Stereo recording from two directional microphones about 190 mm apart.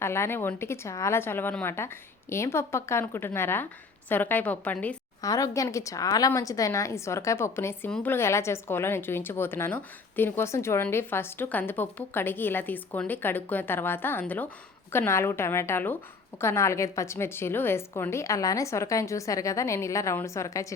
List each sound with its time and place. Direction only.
0.0 s a woman's voice: 15° left (ahead or behind)